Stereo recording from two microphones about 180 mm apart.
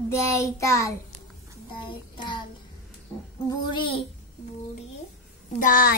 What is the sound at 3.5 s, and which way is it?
Child singing, 30° left (ahead or behind).